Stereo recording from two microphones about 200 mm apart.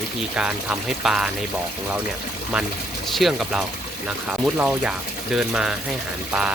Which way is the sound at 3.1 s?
Centre (ahead or behind).